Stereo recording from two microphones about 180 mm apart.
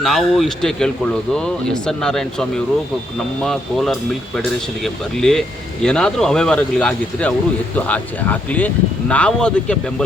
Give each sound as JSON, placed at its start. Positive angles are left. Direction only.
{"t": 0.0, "sound": "speech", "side_deg": 0}